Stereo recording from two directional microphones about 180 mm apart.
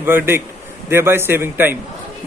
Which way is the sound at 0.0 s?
10° right (ahead or behind).